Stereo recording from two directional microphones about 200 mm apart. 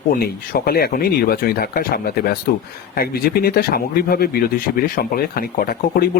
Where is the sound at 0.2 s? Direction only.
50° left (ahead or behind).